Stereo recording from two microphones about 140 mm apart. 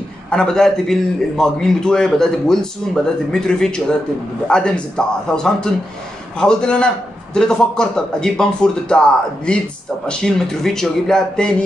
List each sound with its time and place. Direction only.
0.3 s a man's voice: 5° left (ahead or behind)
10.0 s a man's voice: 5° left (ahead or behind)